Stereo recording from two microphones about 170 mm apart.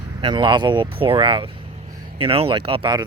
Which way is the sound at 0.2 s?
30° right (ahead or behind).